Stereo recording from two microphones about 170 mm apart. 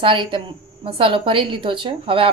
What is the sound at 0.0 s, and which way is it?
A woman's voice, 30° right (ahead or behind).